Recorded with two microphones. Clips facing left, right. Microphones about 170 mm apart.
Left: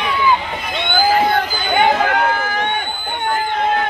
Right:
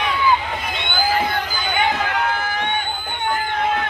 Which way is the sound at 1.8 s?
55° left (ahead or behind).